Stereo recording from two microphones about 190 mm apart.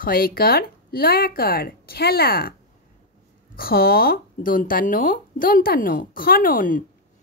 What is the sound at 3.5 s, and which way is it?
A woman's voice, 50° left (ahead or behind).